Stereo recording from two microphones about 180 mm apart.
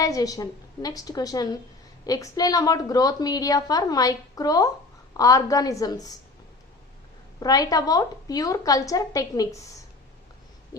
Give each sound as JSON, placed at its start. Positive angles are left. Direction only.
{"t": 0.0, "sound": "a woman's voice", "side_deg": 20}
{"t": 7.3, "sound": "a woman's voice", "side_deg": 20}